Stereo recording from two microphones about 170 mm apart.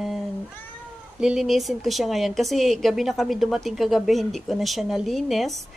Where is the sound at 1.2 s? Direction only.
Centre (ahead or behind).